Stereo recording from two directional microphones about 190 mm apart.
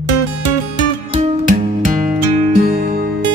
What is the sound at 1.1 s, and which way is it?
Music, 35° right (ahead or behind).